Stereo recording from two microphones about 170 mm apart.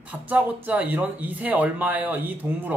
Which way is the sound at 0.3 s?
10° right (ahead or behind).